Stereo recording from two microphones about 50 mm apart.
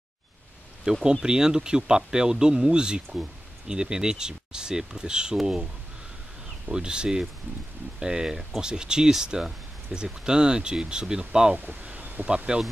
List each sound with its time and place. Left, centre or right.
0.9 s speech: centre
6.7 s speech: centre
11.8 s a sound: right
12.5 s speech: centre